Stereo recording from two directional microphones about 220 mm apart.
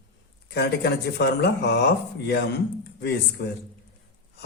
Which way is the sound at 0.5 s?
50° left (ahead or behind).